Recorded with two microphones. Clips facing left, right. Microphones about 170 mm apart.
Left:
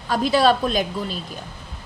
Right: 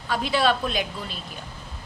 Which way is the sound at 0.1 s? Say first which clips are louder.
Left 5 dB; 40° left (ahead or behind).